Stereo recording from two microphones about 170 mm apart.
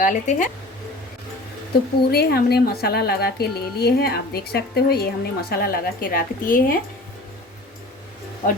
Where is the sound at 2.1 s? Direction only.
70° left (ahead or behind).